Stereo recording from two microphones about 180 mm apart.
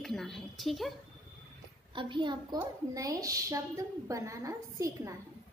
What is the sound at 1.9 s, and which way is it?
A woman's voice, 25° right (ahead or behind).